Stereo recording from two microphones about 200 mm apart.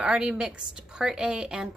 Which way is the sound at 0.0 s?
5° right (ahead or behind).